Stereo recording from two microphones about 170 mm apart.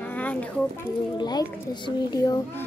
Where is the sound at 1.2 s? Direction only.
25° left (ahead or behind).